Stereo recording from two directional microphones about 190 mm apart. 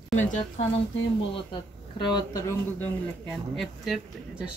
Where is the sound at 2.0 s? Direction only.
25° left (ahead or behind).